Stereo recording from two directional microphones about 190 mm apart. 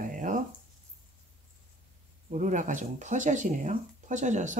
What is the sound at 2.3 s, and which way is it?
Speech, 40° right (ahead or behind).